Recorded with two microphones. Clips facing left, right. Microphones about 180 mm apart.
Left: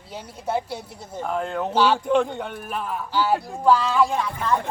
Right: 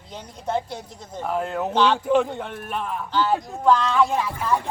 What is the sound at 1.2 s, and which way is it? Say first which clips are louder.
Speech: right 1 dB; 5° right (ahead or behind).